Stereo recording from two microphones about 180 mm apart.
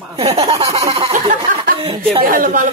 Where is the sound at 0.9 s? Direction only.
30° right (ahead or behind).